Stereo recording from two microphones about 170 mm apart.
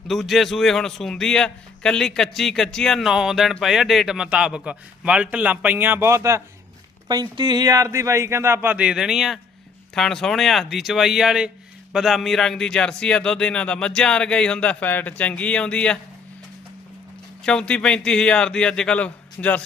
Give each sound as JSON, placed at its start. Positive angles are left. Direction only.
{"t": 0.1, "sound": "a man's voice", "side_deg": 0}
{"t": 17.4, "sound": "a man's voice", "side_deg": 5}